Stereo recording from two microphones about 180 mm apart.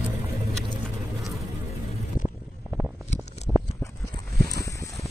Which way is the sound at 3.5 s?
10° right (ahead or behind).